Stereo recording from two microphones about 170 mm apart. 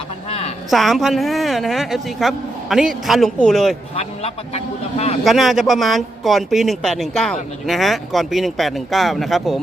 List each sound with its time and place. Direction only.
0.3 s a sound: 35° left (ahead or behind)
0.7 s speech: centre (ahead or behind)
3.9 s speech: 35° left (ahead or behind)
5.2 s speech: centre (ahead or behind)